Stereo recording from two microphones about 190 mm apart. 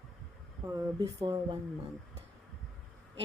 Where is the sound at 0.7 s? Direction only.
15° right (ahead or behind).